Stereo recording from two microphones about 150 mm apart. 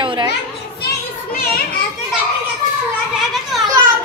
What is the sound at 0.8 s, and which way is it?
Children playing, 90° left.